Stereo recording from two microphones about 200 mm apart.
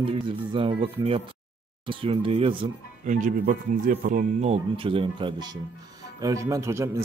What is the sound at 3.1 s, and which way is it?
Speech, 40° right (ahead or behind).